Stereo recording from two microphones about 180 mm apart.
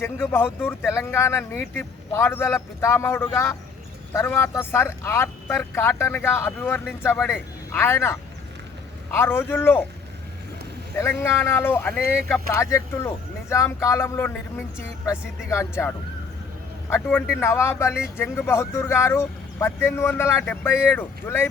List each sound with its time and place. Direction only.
0.0 s speech: 15° left (ahead or behind)
11.2 s speech: 15° left (ahead or behind)
16.9 s speech: 10° left (ahead or behind)